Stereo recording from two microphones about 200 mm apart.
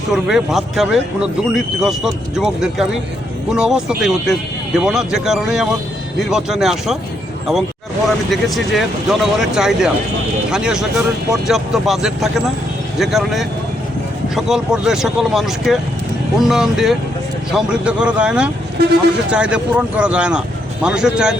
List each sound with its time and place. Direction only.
0.1 s speech: centre (ahead or behind)
8.0 s speech: centre (ahead or behind)
18.8 s speech: 55° right (ahead or behind)
19.3 s speech: 5° right (ahead or behind)